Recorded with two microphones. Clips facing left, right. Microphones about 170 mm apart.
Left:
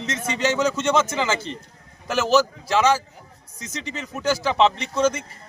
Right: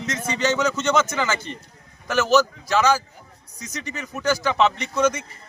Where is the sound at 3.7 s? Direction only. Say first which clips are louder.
Left 1 dB; 25° left (ahead or behind).